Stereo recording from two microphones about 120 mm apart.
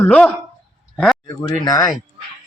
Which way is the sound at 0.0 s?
10° left (ahead or behind).